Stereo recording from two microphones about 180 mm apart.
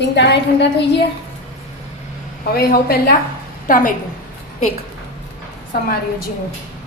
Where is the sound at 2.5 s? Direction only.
60° left (ahead or behind).